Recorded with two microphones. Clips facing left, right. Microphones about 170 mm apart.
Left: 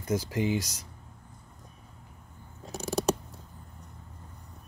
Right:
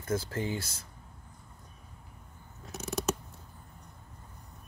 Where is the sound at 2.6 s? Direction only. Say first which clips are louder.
Left 5 dB; 35° left (ahead or behind).